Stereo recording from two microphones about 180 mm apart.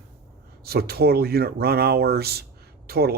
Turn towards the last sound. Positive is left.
turn(degrees=-60)  # may be behind; listen again after turning